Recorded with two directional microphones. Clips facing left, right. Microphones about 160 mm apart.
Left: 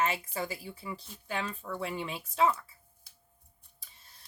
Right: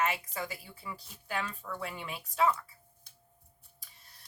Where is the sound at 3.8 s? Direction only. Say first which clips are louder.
Left 1 dB; 25° left (ahead or behind).